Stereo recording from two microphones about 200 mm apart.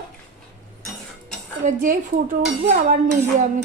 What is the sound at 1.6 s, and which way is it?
Speech, 40° right (ahead or behind).